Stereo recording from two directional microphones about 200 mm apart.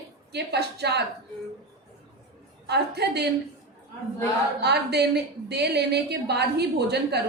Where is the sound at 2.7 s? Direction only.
55° right (ahead or behind).